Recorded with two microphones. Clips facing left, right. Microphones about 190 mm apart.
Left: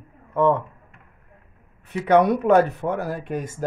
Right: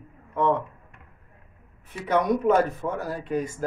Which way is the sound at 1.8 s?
65° left (ahead or behind).